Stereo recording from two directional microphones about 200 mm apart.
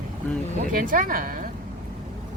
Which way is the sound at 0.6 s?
45° right (ahead or behind).